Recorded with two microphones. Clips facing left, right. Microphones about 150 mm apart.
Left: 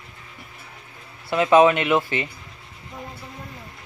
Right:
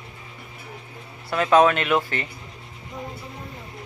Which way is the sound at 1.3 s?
15° left (ahead or behind).